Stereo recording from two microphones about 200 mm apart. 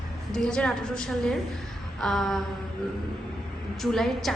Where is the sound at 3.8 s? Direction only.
Centre (ahead or behind).